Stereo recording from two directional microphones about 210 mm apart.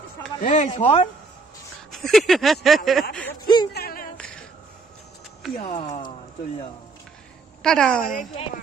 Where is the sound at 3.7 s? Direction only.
45° left (ahead or behind).